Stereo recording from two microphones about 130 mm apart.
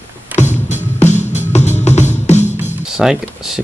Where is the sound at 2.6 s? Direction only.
15° right (ahead or behind).